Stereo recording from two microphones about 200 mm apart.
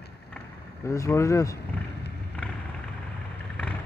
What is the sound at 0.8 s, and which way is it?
Speech, 15° left (ahead or behind).